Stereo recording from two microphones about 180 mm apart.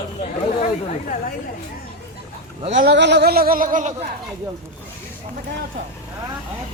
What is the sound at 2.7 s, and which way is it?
A man's voice, 85° right.